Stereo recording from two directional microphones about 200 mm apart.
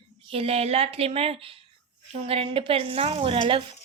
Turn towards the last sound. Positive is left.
turn(degrees=-25)  # may be behind; listen again after turning